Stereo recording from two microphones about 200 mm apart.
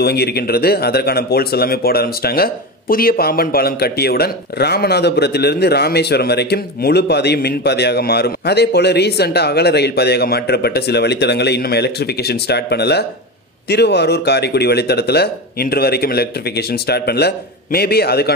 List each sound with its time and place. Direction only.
0.0 s speech: 55° left (ahead or behind)